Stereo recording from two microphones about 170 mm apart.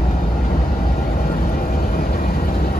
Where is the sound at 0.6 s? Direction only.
55° left (ahead or behind).